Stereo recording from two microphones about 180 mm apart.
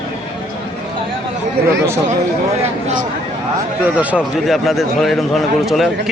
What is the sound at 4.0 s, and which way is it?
Speech, 5° right (ahead or behind).